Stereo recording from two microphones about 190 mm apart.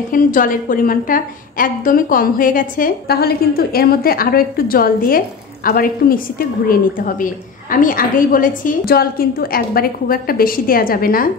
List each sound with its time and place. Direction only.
0.1 s a woman's voice: 45° left (ahead or behind)